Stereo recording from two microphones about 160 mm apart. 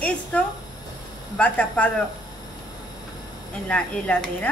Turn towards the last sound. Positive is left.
turn(degrees=10)  # may be behind; listen again after turning